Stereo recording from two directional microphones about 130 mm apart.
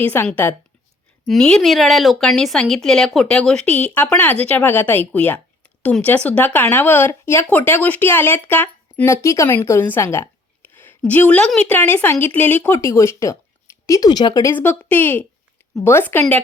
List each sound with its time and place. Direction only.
0.0 s speech: 15° left (ahead or behind)
1.3 s a woman's voice: 5° left (ahead or behind); by 14.5 s 30° left (ahead or behind)
14.5 s speech: 15° left (ahead or behind)